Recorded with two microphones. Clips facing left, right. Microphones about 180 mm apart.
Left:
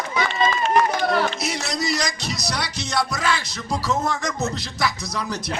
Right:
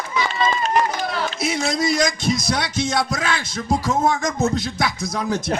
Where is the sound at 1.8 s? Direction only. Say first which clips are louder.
Right 5 dB; 50° right (ahead or behind).